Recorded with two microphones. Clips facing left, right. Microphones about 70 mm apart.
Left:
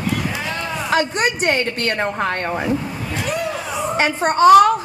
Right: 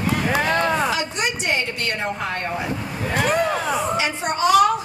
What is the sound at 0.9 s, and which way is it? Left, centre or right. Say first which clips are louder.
A woman's voice: left 6 dB; left.